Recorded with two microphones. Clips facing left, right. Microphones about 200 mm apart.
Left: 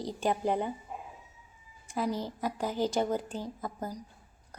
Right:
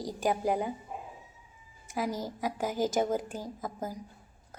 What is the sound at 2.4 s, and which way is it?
A woman's voice, 10° right (ahead or behind).